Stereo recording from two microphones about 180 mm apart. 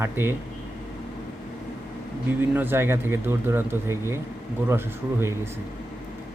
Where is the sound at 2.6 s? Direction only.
10° right (ahead or behind).